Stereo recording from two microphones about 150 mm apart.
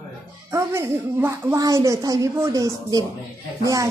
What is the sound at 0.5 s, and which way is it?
A woman's voice, 20° right (ahead or behind).